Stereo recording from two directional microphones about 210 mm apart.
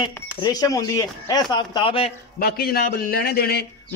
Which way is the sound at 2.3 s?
45° left (ahead or behind).